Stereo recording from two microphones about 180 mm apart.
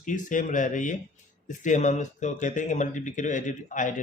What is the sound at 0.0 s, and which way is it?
Speech, 45° left (ahead or behind).